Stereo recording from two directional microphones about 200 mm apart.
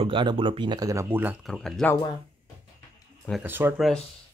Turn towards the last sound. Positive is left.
turn(degrees=-5)  # may be behind; listen again after turning